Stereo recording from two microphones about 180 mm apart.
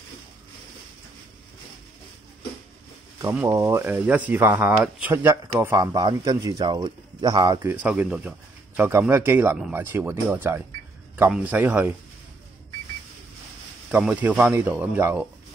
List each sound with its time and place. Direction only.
3.2 s speech: 15° right (ahead or behind)
7.6 s speech: 10° right (ahead or behind)
13.9 s speech: 10° right (ahead or behind)